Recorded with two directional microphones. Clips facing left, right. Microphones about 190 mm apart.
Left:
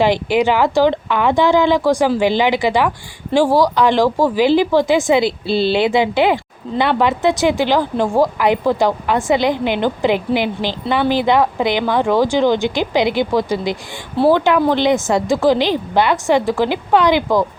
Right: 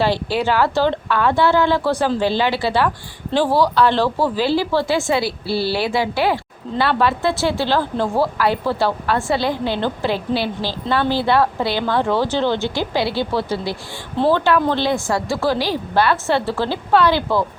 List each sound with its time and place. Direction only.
0.0 s speech: 15° left (ahead or behind)